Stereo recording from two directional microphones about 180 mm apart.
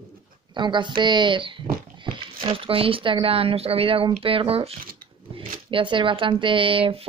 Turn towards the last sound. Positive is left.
turn(degrees=-30)  # may be behind; listen again after turning